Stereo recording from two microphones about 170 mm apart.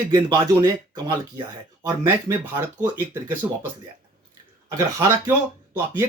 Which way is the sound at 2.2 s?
10° right (ahead or behind).